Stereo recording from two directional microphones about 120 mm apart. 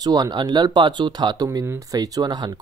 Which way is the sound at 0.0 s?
35° right (ahead or behind).